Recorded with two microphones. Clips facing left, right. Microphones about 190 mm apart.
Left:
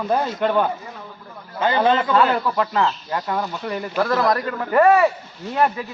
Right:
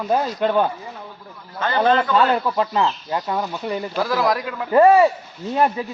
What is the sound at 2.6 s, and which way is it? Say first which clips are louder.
Speech: even; 20° right (ahead or behind).